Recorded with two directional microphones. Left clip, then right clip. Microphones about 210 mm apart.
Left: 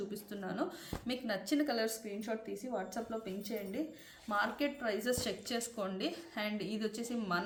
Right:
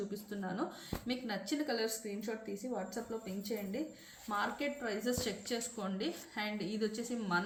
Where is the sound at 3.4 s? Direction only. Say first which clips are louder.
Even; 50° left (ahead or behind).